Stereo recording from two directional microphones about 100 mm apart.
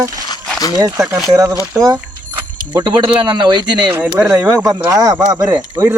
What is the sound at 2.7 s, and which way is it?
Speech, 50° right (ahead or behind).